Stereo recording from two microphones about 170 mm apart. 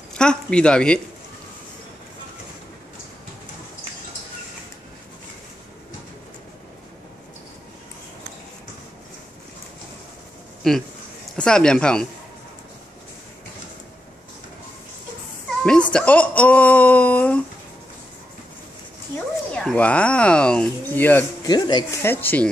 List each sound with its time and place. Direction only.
0.2 s speech: 5° left (ahead or behind)
10.6 s speech: 5° left (ahead or behind)
15.6 s a sound: 5° left (ahead or behind)
19.1 s speech: 5° left (ahead or behind)
21.5 s speech: 25° left (ahead or behind)
22.0 s speech: 10° left (ahead or behind)